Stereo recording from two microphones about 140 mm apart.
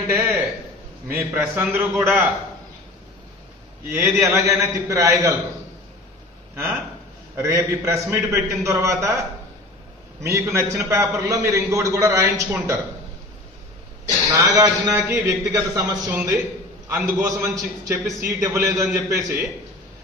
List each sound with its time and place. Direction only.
0.0 s a sound: 20° right (ahead or behind)
1.0 s a man's voice: 15° right (ahead or behind)
3.9 s a man's voice: 15° right (ahead or behind)
6.5 s a man's voice: 15° right (ahead or behind)
10.2 s a man's voice: 20° right (ahead or behind)
14.0 s a man's voice: 25° right (ahead or behind)